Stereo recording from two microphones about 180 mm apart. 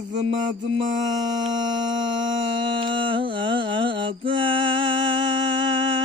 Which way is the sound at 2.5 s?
25° right (ahead or behind).